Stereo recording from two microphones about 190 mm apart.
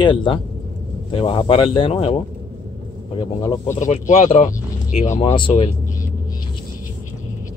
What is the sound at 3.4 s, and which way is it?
Speech, 20° left (ahead or behind).